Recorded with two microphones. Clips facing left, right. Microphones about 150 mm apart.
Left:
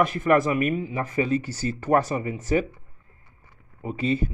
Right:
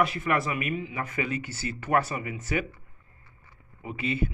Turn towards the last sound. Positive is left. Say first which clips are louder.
# left 5 dB
turn(degrees=40)  # may be behind; listen again after turning